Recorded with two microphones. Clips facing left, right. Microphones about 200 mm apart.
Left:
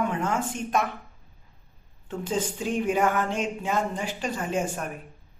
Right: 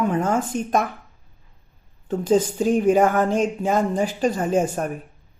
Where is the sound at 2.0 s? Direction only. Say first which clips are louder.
Right 9 dB; 40° right (ahead or behind).